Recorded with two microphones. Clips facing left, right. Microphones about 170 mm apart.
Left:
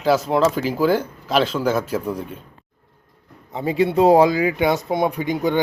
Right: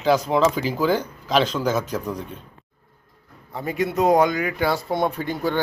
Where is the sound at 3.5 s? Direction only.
25° left (ahead or behind).